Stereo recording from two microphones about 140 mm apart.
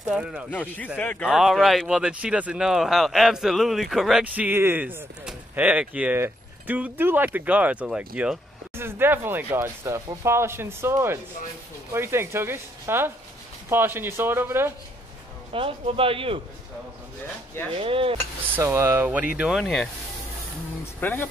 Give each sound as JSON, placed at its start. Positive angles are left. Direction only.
{"t": 0.1, "sound": "speech", "side_deg": -5}
{"t": 0.5, "sound": "speech", "side_deg": 10}
{"t": 1.3, "sound": "speech", "side_deg": 0}
{"t": 15.5, "sound": "speech", "side_deg": -40}
{"t": 17.7, "sound": "speech", "side_deg": -40}
{"t": 18.5, "sound": "speech", "side_deg": -20}
{"t": 21.0, "sound": "speech", "side_deg": 10}